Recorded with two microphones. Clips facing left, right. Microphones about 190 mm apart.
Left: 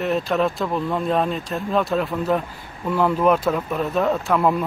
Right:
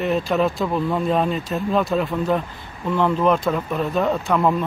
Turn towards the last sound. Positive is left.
turn(degrees=5)  # may be behind; listen again after turning